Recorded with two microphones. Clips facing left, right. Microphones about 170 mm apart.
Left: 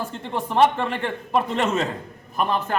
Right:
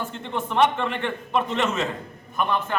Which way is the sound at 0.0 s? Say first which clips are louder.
Left 1 dB; 35° left (ahead or behind).